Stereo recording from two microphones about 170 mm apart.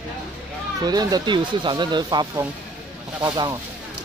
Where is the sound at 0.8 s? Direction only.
25° right (ahead or behind).